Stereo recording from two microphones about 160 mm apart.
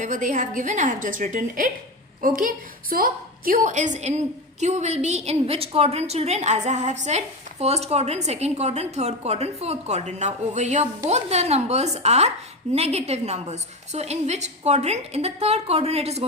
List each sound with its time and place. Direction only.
0.0 s a woman's voice: 55° right (ahead or behind)
2.9 s a woman's voice: 65° right (ahead or behind); by 16.2 s 40° right (ahead or behind)